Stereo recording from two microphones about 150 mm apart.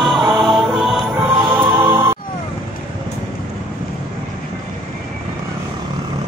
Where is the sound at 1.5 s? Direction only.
15° right (ahead or behind).